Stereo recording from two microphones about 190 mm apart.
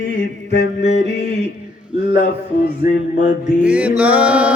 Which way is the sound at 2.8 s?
55° left (ahead or behind).